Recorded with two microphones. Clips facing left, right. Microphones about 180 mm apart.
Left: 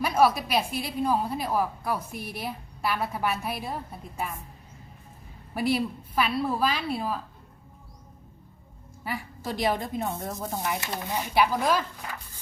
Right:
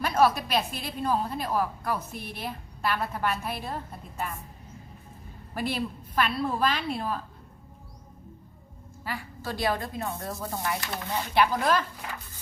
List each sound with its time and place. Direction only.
0.0 s a woman's voice: 10° left (ahead or behind)
5.5 s a woman's voice: 5° left (ahead or behind)
9.0 s a woman's voice: 20° left (ahead or behind)